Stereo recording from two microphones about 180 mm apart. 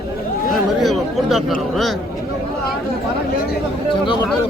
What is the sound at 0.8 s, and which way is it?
Speech, centre (ahead or behind).